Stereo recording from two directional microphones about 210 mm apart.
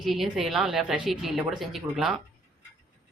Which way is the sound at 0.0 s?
Centre (ahead or behind).